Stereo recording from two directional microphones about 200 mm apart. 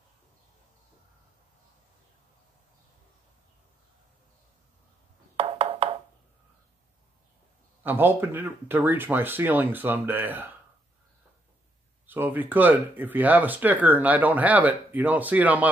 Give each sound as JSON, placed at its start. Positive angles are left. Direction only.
{"t": 5.3, "sound": "a sound", "side_deg": -25}
{"t": 7.8, "sound": "speech", "side_deg": -10}
{"t": 12.1, "sound": "speech", "side_deg": -10}